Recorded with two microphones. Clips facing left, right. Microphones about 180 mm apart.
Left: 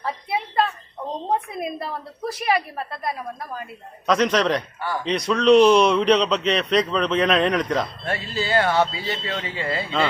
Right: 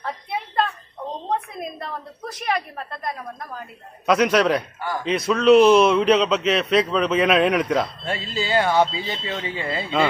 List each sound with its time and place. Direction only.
0.0 s a sound: 5° left (ahead or behind)
1.3 s a man's voice: 5° left (ahead or behind)
4.0 s a man's voice: 10° right (ahead or behind)